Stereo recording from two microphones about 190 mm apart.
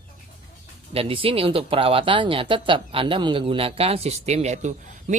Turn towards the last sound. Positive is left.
turn(degrees=-35)  # may be behind; listen again after turning